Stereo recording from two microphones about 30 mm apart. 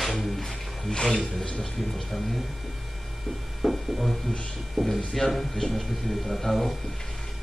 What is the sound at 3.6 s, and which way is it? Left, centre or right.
Speech, centre.